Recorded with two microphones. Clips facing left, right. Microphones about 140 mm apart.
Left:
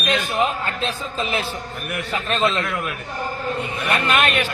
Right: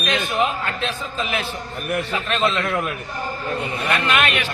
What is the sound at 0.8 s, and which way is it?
Speech, 35° left (ahead or behind).